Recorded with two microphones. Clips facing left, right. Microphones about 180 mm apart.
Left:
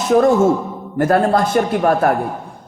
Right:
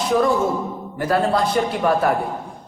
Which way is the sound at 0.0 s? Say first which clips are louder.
Left 6 dB; 45° left (ahead or behind).